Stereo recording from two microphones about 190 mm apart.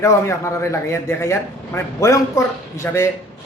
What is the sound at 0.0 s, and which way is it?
A man's voice, 15° left (ahead or behind).